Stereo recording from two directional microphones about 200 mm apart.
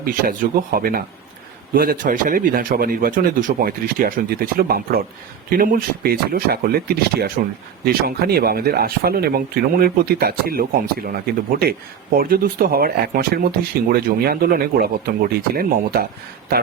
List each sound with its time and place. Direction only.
0.0 s speech: 45° right (ahead or behind)